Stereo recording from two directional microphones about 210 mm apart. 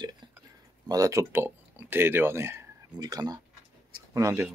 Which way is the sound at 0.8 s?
15° right (ahead or behind).